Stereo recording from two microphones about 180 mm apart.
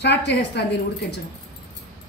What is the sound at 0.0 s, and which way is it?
Speech, 70° left (ahead or behind).